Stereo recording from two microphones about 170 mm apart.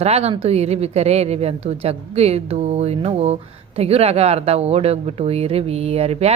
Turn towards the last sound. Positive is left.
turn(degrees=-40)  # may be behind; listen again after turning